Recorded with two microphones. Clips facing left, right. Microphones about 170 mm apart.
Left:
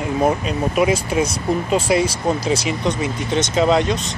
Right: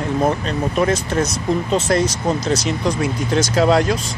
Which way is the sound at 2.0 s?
30° left (ahead or behind).